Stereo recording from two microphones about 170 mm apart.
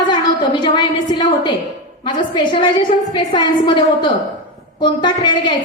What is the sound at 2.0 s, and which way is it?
A woman's voice, 25° left (ahead or behind).